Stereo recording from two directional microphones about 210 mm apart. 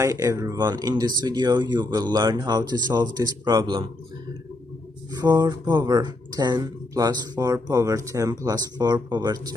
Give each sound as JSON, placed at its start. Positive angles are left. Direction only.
{"t": 0.0, "sound": "speech", "side_deg": -15}
{"t": 5.1, "sound": "speech", "side_deg": -20}